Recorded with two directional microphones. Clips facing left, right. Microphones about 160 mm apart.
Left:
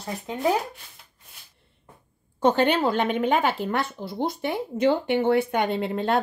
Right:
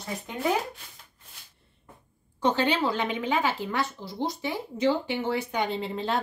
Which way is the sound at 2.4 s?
50° left (ahead or behind).